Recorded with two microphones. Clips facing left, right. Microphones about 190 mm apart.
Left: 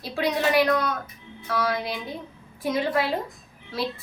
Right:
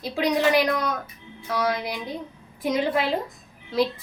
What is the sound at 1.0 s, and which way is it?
A woman's voice, 20° right (ahead or behind).